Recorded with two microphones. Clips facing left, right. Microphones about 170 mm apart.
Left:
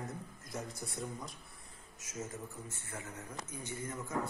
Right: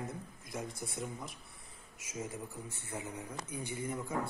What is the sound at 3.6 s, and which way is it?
Speech, 10° right (ahead or behind).